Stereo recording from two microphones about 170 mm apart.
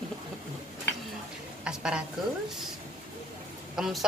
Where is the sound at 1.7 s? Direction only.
5° right (ahead or behind).